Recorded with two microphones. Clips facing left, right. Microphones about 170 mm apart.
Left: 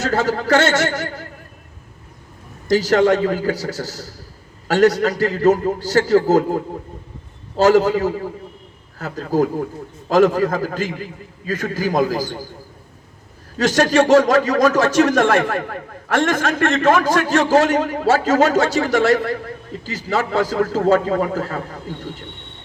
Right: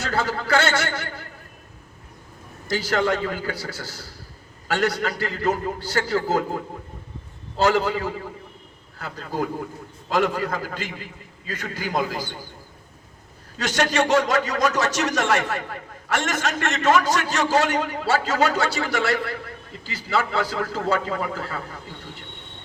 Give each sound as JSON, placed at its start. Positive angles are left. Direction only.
{"t": 0.0, "sound": "speech", "side_deg": 45}
{"t": 2.6, "sound": "a man's voice", "side_deg": 40}
{"t": 13.6, "sound": "speech", "side_deg": 45}